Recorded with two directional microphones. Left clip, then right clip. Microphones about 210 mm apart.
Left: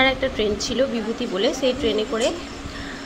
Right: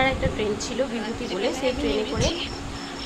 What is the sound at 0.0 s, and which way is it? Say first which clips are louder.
Speech: left 4 dB; 15° left (ahead or behind).